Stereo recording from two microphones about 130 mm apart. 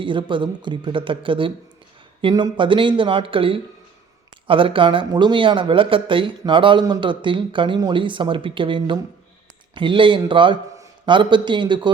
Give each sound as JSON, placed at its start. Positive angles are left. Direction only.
{"t": 0.0, "sound": "speech", "side_deg": -40}